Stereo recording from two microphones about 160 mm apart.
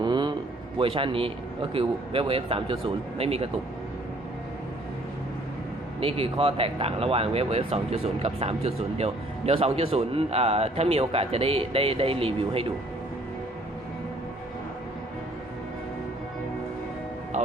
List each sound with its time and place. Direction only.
0.0 s a sound: 30° right (ahead or behind)
0.8 s speech: 35° right (ahead or behind)
6.0 s speech: 35° right (ahead or behind)
17.3 s music: 50° right (ahead or behind)